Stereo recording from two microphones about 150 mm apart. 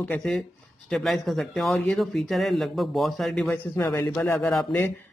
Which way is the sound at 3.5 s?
20° left (ahead or behind).